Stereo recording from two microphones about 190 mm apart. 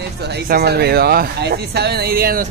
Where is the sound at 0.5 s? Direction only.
55° right (ahead or behind).